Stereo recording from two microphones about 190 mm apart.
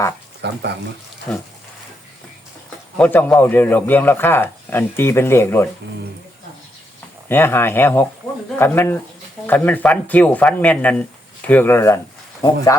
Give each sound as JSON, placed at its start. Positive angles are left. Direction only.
{"t": 0.4, "sound": "speech", "side_deg": -65}
{"t": 1.3, "sound": "a man's voice", "side_deg": 5}
{"t": 3.0, "sound": "a man's voice", "side_deg": 10}
{"t": 7.3, "sound": "a man's voice", "side_deg": 10}